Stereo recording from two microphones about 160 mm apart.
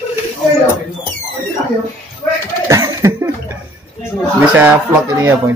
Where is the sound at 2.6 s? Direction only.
20° right (ahead or behind).